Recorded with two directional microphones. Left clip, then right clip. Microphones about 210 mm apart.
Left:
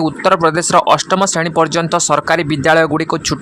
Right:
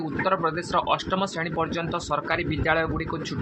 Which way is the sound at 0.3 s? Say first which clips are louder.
Left 13 dB; 50° left (ahead or behind).